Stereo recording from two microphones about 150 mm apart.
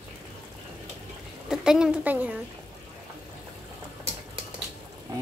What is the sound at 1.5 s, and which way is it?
Speech, 5° right (ahead or behind).